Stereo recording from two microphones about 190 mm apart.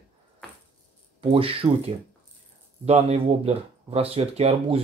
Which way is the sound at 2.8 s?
35° right (ahead or behind).